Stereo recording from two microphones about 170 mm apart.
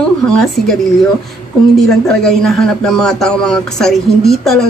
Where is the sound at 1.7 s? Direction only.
Centre (ahead or behind).